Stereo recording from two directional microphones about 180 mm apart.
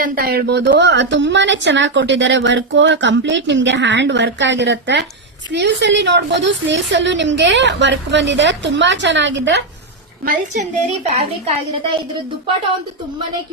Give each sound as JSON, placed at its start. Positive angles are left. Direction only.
{"t": 0.0, "sound": "a woman's voice", "side_deg": -55}
{"t": 10.2, "sound": "a woman's voice", "side_deg": -40}